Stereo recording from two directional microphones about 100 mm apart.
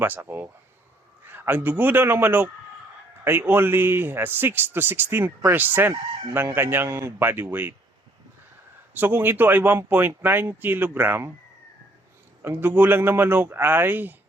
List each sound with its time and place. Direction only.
0.0 s a man's voice: 20° right (ahead or behind)
9.0 s a man's voice: 20° right (ahead or behind)
12.4 s a man's voice: 20° right (ahead or behind)